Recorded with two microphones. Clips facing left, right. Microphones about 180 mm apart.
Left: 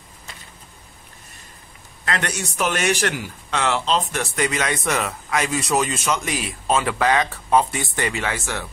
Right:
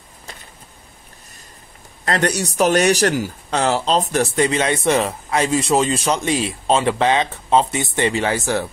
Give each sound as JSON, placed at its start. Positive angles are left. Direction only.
{"t": 2.0, "sound": "speech", "side_deg": -35}